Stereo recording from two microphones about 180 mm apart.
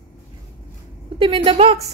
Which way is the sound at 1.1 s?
30° right (ahead or behind).